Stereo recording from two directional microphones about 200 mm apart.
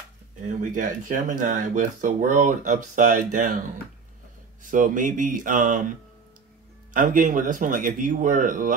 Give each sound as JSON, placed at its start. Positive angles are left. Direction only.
{"t": 0.6, "sound": "speech", "side_deg": -40}
{"t": 4.6, "sound": "speech", "side_deg": -40}